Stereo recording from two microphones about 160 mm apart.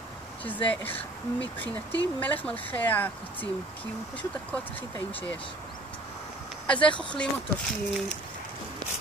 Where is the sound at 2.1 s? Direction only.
10° left (ahead or behind).